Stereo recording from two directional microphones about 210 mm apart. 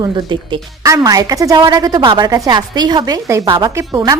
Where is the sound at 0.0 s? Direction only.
20° right (ahead or behind).